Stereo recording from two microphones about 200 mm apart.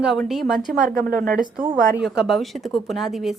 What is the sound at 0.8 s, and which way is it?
Speech, 45° right (ahead or behind).